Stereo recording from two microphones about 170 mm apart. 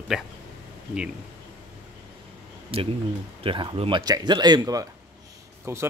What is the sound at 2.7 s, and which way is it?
Speech, 35° right (ahead or behind).